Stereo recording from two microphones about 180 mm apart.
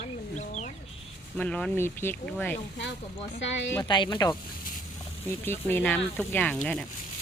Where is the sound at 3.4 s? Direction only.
85° left.